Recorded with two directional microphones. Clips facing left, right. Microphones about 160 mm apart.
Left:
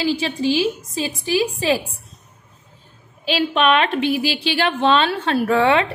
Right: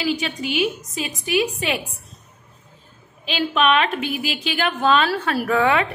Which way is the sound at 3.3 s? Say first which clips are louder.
Left 2 dB; 35° left (ahead or behind).